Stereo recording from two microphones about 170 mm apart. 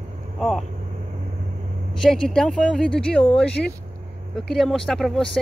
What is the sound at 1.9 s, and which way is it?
Speech, 5° left (ahead or behind).